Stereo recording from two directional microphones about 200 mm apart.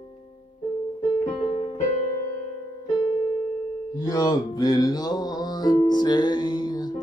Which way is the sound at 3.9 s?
20° left (ahead or behind).